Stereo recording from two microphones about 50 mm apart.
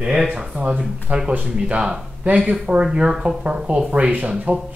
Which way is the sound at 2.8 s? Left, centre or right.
Centre.